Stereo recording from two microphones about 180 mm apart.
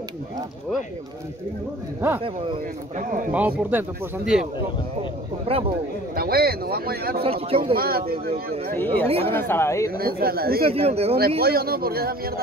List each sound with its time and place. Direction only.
2.0 s speech: 10° right (ahead or behind)
3.0 s speech: 45° right (ahead or behind)
3.3 s speech: 10° right (ahead or behind)
5.5 s speech: 30° right (ahead or behind)
6.1 s speech: 60° right (ahead or behind)
7.2 s speech: 30° right (ahead or behind)
7.7 s speech: 55° right (ahead or behind)
9.0 s speech: 30° right (ahead or behind)
9.3 s speech: 10° left (ahead or behind)
9.9 s speech: 55° right (ahead or behind)
10.6 s speech: 35° right (ahead or behind)
11.1 s speech: 55° right (ahead or behind)